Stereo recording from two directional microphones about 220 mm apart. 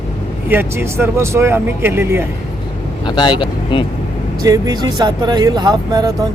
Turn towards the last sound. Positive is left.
turn(degrees=-15)  # may be behind; listen again after turning